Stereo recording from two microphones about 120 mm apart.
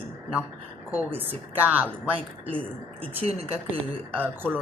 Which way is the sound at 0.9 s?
15° right (ahead or behind).